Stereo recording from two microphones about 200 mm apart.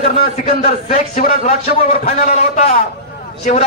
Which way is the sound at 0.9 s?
45° left (ahead or behind).